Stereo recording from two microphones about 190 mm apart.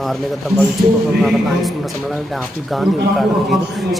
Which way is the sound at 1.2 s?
Centre (ahead or behind).